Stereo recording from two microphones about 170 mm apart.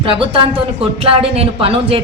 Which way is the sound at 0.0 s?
30° right (ahead or behind).